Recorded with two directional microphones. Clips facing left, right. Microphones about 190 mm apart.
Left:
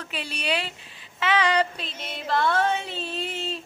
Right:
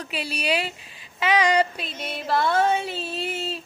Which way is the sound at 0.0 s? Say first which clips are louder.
Right 3 dB; 10° right (ahead or behind).